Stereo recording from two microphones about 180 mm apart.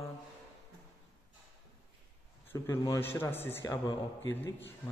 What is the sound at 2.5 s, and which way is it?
A man's voice, 15° left (ahead or behind).